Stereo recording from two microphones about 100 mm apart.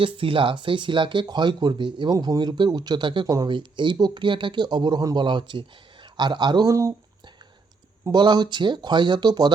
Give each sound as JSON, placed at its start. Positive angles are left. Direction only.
{"t": 0.0, "sound": "speech", "side_deg": -60}
{"t": 3.2, "sound": "speech", "side_deg": -40}
{"t": 3.5, "sound": "speech", "side_deg": -50}
{"t": 6.7, "sound": "speech", "side_deg": -30}
{"t": 8.1, "sound": "speech", "side_deg": -45}